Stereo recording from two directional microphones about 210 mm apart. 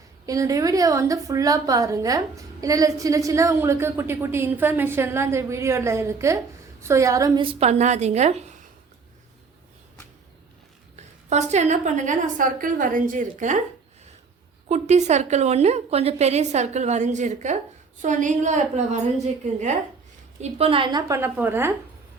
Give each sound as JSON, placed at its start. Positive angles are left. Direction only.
{"t": 0.3, "sound": "a woman's voice", "side_deg": -15}
{"t": 10.9, "sound": "a woman's voice", "side_deg": -35}
{"t": 14.7, "sound": "a woman's voice", "side_deg": -35}